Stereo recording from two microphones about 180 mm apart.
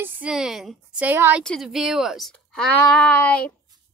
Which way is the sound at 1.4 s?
Centre (ahead or behind).